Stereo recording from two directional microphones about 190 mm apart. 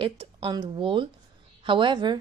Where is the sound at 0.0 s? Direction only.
25° right (ahead or behind).